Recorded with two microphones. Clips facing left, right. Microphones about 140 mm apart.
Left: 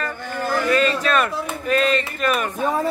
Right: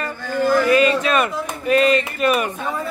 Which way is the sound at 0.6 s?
10° right (ahead or behind).